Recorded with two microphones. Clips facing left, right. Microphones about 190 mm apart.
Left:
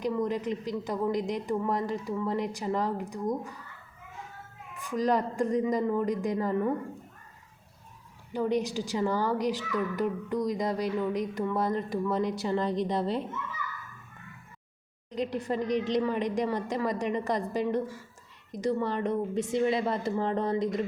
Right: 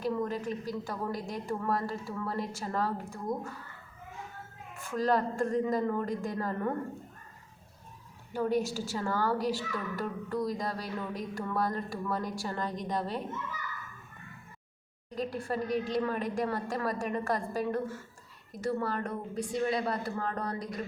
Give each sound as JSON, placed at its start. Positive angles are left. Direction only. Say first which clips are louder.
{"t": 0.0, "sound": "a woman's voice", "louder": "left 3 dB", "side_deg": 15}
{"t": 4.8, "sound": "a woman's voice", "louder": "left 2 dB", "side_deg": 15}
{"t": 8.3, "sound": "speech", "louder": "left 1 dB", "side_deg": 20}
{"t": 15.1, "sound": "speech", "louder": "left 3 dB", "side_deg": 20}